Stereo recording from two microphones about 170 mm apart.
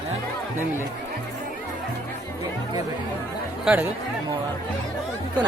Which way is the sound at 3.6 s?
10° right (ahead or behind).